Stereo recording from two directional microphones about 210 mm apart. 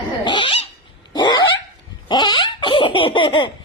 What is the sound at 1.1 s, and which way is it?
Dog, 20° left (ahead or behind).